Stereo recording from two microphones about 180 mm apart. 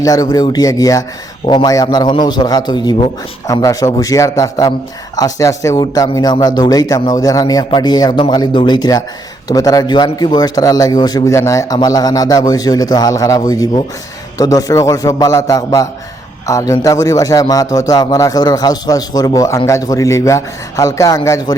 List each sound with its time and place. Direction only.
0.0 s a man's voice: 20° left (ahead or behind)